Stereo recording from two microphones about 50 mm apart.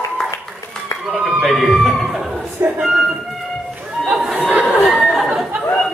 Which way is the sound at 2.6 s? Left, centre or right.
Right.